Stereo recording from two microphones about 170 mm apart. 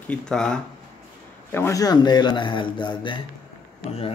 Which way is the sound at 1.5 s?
15° left (ahead or behind).